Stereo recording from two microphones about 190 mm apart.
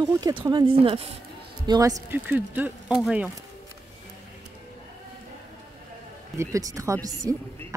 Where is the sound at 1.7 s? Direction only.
15° right (ahead or behind).